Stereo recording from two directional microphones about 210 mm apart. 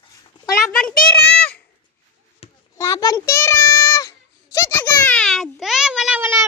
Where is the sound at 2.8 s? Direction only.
15° left (ahead or behind).